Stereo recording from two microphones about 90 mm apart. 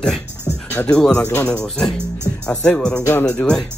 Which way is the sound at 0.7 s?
20° left (ahead or behind).